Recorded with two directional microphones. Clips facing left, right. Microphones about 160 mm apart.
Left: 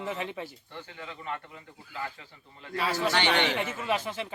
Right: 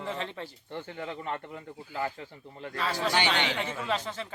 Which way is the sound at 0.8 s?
45° right (ahead or behind).